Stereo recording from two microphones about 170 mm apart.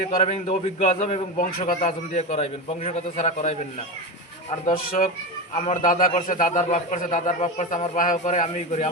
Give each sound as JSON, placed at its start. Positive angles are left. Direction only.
{"t": 0.1, "sound": "a man's voice", "side_deg": 40}
{"t": 1.4, "sound": "a man's voice", "side_deg": 55}
{"t": 1.8, "sound": "a man's voice", "side_deg": 40}
{"t": 4.6, "sound": "a man's voice", "side_deg": 55}
{"t": 5.5, "sound": "a man's voice", "side_deg": 40}